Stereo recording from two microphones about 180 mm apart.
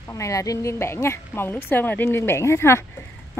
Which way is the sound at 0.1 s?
15° left (ahead or behind).